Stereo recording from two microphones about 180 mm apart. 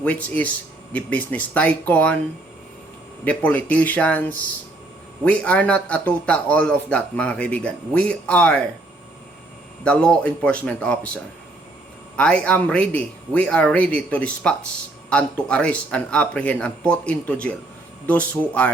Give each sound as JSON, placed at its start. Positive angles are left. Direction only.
{"t": 0.0, "sound": "a man's voice", "side_deg": 10}
{"t": 3.2, "sound": "a man's voice", "side_deg": 10}
{"t": 9.8, "sound": "a man's voice", "side_deg": 5}